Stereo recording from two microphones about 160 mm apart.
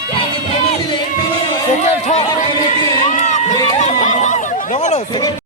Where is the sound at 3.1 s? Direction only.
45° left (ahead or behind).